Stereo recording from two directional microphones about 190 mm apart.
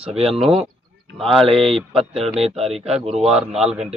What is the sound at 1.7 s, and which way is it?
Speech, 30° right (ahead or behind).